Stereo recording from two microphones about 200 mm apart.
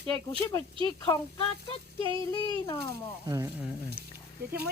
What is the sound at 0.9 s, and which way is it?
Speech, 20° left (ahead or behind).